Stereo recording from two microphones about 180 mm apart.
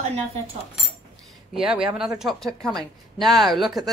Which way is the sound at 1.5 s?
5° right (ahead or behind).